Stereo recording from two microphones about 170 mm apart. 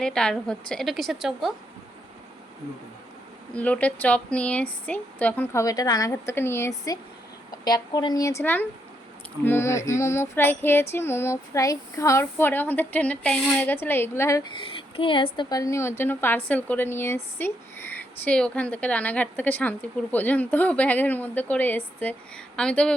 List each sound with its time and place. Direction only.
0.0 s a woman's voice: 5° left (ahead or behind)
3.5 s a woman's voice: 10° left (ahead or behind)
14.5 s a woman's voice: 30° left (ahead or behind); by 23.0 s 5° left (ahead or behind)